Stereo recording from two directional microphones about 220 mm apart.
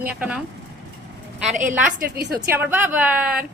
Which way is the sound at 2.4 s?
10° right (ahead or behind).